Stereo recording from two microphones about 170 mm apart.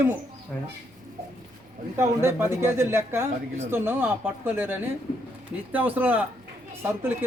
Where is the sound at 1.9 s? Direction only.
15° right (ahead or behind).